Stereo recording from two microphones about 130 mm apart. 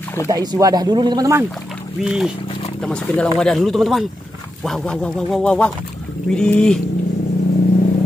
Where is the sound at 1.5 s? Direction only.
5° right (ahead or behind).